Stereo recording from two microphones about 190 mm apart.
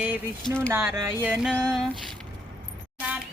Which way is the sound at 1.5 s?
5° left (ahead or behind).